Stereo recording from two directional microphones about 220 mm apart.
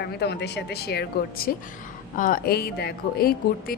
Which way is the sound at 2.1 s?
40° left (ahead or behind).